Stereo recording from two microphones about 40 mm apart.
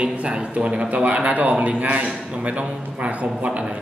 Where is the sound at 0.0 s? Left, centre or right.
Right.